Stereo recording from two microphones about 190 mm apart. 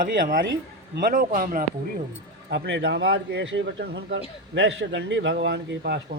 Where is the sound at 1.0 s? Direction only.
50° right (ahead or behind).